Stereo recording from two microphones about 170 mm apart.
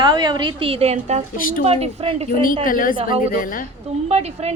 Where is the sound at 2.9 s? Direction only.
30° right (ahead or behind).